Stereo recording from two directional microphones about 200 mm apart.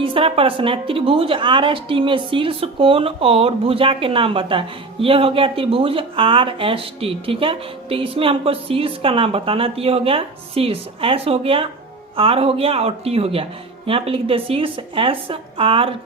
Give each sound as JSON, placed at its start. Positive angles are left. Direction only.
{"t": 0.0, "sound": "a woman's voice", "side_deg": -25}